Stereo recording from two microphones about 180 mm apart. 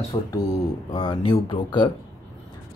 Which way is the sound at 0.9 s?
25° left (ahead or behind).